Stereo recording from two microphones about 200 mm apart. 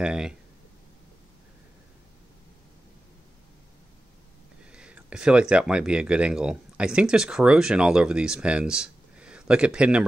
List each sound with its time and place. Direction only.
0.0 s speech: 5° right (ahead or behind)
4.7 s speech: 5° right (ahead or behind)